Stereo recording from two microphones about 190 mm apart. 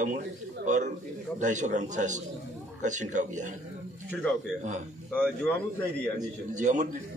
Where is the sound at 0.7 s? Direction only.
40° right (ahead or behind).